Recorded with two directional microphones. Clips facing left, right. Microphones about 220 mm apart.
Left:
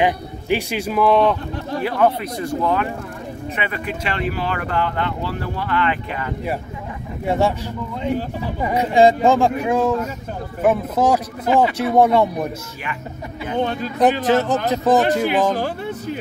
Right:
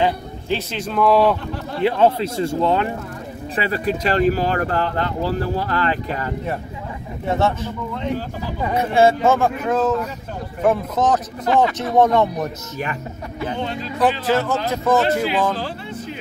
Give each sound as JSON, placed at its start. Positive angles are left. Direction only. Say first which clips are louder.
{"t": 0.0, "sound": "speech", "louder": "left 1 dB", "side_deg": 15}
{"t": 1.8, "sound": "speech", "louder": "right 2 dB", "side_deg": -25}
{"t": 7.2, "sound": "speech", "louder": "left 1 dB", "side_deg": 15}
{"t": 13.7, "sound": "speech", "louder": "left 3 dB", "side_deg": 50}
{"t": 14.2, "sound": "speech", "louder": "left 2 dB", "side_deg": 20}